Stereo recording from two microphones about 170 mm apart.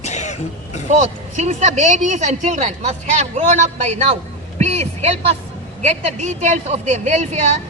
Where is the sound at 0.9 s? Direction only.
45° right (ahead or behind).